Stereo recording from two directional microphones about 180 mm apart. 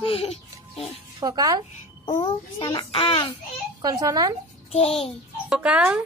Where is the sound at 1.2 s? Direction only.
20° right (ahead or behind).